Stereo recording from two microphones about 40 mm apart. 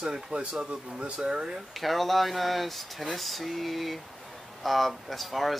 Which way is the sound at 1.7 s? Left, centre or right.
Centre.